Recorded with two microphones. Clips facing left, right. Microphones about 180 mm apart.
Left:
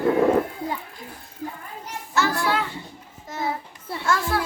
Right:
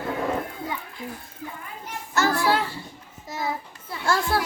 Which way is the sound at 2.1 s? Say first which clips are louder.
Right 1 dB; 40° right (ahead or behind).